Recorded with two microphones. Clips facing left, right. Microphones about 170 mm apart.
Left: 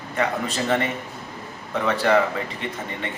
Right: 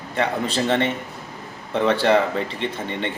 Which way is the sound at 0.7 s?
25° right (ahead or behind).